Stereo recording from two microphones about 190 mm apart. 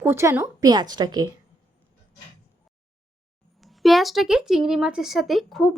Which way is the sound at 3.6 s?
Centre (ahead or behind).